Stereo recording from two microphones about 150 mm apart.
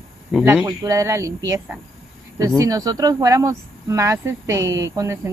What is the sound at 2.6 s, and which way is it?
Speech, 25° right (ahead or behind).